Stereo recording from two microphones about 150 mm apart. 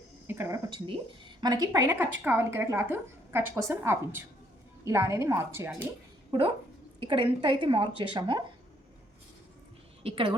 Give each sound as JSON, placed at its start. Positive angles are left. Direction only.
{"t": 0.3, "sound": "speech", "side_deg": -15}
{"t": 0.7, "sound": "a woman's voice", "side_deg": -30}
{"t": 7.0, "sound": "a woman's voice", "side_deg": -35}
{"t": 10.0, "sound": "a woman's voice", "side_deg": -40}